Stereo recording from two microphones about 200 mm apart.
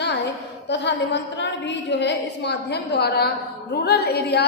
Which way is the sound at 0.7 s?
60° left (ahead or behind).